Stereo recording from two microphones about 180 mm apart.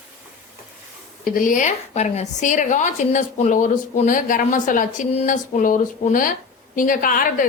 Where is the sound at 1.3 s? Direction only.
45° left (ahead or behind).